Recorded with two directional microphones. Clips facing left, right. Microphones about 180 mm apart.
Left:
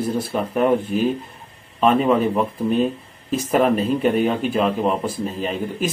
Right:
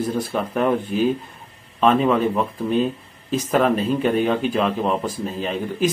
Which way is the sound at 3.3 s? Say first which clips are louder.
Left 1 dB; 10° left (ahead or behind).